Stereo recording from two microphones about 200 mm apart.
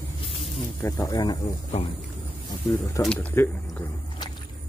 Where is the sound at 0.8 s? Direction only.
20° left (ahead or behind).